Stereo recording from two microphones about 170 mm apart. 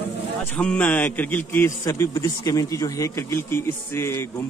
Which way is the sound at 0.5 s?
5° left (ahead or behind).